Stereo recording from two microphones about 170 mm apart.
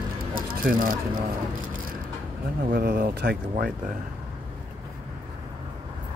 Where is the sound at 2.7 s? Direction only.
60° right (ahead or behind).